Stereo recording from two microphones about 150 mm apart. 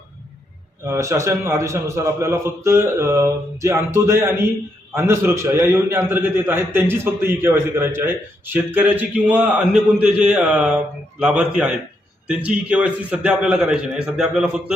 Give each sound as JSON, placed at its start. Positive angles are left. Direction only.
{"t": 0.9, "sound": "a man's voice", "side_deg": -20}